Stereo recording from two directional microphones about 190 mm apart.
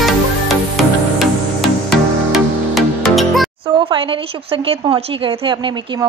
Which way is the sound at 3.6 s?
30° right (ahead or behind).